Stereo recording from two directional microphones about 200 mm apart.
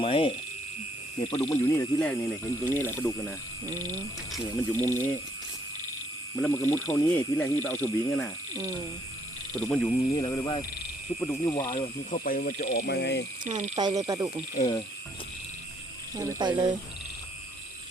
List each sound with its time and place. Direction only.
0.0 s speech: 25° left (ahead or behind)
1.2 s speech: 15° left (ahead or behind)
3.7 s speech: 15° right (ahead or behind)
4.8 s speech: 10° left (ahead or behind)
6.4 s speech: 10° left (ahead or behind)
9.6 s speech: 5° left (ahead or behind)
10.2 s speech: 20° left (ahead or behind)
12.2 s speech: 50° left (ahead or behind)
13.4 s speech: 40° right (ahead or behind)
13.7 s speech: 20° right (ahead or behind)
16.1 s speech: 20° right (ahead or behind)